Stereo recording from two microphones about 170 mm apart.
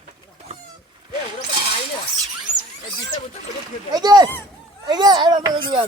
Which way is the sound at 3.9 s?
25° right (ahead or behind).